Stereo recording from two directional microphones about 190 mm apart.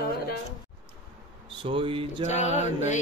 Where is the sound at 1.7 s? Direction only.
30° right (ahead or behind).